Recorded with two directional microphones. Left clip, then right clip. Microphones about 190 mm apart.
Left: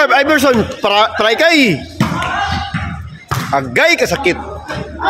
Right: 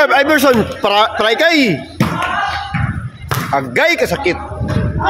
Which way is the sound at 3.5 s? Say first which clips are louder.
Left 2 dB; 10° left (ahead or behind).